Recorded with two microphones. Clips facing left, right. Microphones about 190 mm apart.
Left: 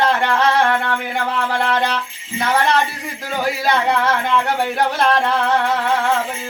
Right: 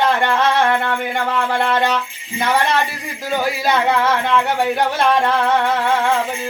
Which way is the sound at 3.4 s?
Centre (ahead or behind).